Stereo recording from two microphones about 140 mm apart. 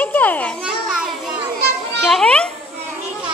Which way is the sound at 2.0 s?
Centre (ahead or behind).